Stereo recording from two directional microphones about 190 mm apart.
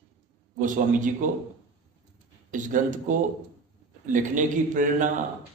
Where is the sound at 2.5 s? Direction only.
45° right (ahead or behind).